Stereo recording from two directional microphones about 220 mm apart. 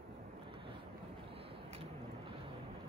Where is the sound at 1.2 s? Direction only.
25° right (ahead or behind).